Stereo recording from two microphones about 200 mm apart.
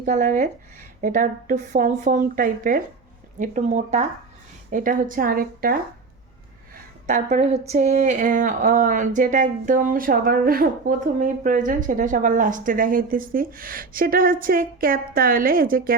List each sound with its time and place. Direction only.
0.0 s speech: 40° right (ahead or behind)
7.1 s speech: 35° right (ahead or behind)